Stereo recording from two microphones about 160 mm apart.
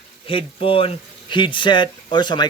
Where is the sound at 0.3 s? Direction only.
35° left (ahead or behind).